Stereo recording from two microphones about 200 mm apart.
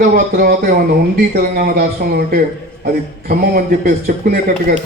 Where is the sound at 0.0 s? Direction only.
50° right (ahead or behind).